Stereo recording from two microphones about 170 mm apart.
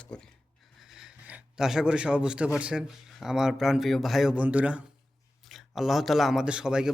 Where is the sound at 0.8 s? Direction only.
Centre (ahead or behind).